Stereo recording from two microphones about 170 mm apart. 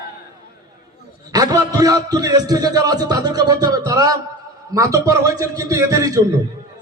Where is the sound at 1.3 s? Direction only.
20° right (ahead or behind).